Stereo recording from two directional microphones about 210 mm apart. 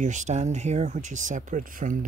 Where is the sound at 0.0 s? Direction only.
35° right (ahead or behind).